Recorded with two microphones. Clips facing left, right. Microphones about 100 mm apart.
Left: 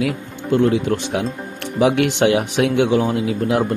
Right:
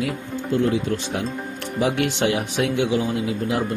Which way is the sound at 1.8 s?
80° left.